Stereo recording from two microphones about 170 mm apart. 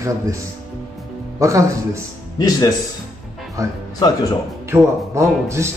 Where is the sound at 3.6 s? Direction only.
20° right (ahead or behind).